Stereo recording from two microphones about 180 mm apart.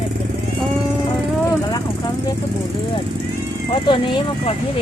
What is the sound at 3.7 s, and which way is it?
Speech, 25° left (ahead or behind).